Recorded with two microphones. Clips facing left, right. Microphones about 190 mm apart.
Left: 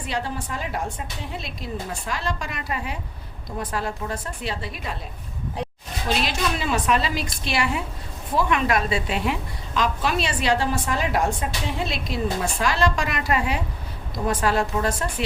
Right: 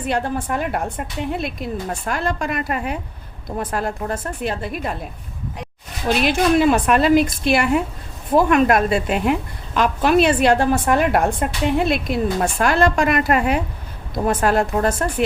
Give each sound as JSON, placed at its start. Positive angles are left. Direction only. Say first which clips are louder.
{"t": 0.1, "sound": "a woman's voice", "louder": "right 7 dB", "side_deg": -55}
{"t": 6.1, "sound": "a woman's voice", "louder": "right 8 dB", "side_deg": -55}